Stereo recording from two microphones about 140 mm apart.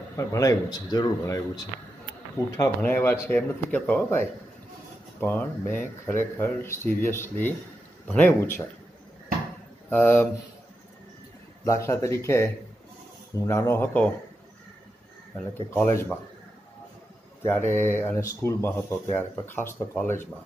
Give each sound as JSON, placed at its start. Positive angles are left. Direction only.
{"t": 0.1, "sound": "speech", "side_deg": 20}
{"t": 9.8, "sound": "speech", "side_deg": 10}
{"t": 11.6, "sound": "speech", "side_deg": 20}
{"t": 15.3, "sound": "speech", "side_deg": 15}
{"t": 17.5, "sound": "speech", "side_deg": 15}